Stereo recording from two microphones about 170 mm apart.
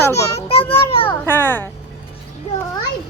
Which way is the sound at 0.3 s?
35° left (ahead or behind).